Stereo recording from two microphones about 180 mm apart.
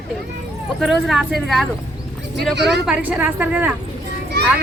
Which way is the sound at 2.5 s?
70° right (ahead or behind).